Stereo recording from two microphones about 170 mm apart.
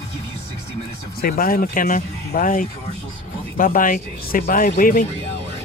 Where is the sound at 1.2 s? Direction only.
60° left (ahead or behind).